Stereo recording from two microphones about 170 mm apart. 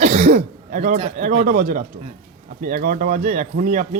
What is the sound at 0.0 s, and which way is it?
Speech, 40° right (ahead or behind).